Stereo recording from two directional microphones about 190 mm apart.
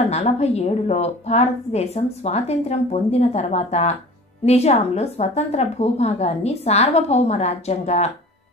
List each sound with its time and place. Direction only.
0.1 s a woman's voice: 35° left (ahead or behind)